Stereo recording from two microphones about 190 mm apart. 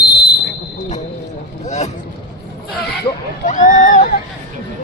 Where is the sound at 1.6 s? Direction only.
35° left (ahead or behind).